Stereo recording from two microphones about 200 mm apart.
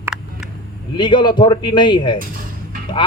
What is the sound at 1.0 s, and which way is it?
A man's voice, 25° left (ahead or behind).